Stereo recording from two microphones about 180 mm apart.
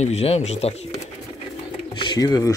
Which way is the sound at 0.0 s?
35° left (ahead or behind).